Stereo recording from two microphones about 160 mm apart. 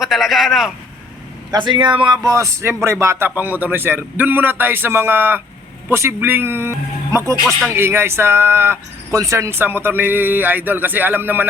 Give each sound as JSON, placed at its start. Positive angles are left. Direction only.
{"t": 0.0, "sound": "speech", "side_deg": 0}
{"t": 1.5, "sound": "speech", "side_deg": -30}